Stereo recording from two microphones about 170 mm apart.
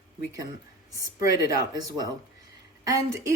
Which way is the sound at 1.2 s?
20° right (ahead or behind).